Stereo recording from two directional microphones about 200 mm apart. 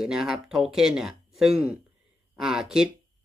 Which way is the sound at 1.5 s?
30° right (ahead or behind).